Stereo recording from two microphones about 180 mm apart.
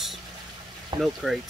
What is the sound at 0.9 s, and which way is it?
Speech, 25° right (ahead or behind).